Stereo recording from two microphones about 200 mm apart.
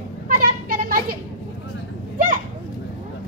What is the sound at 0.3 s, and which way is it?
Children playing, 45° right (ahead or behind).